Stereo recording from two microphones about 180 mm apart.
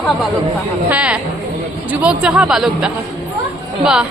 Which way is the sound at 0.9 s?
5° right (ahead or behind).